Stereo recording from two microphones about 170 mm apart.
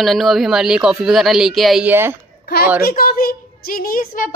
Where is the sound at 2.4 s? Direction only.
65° left (ahead or behind).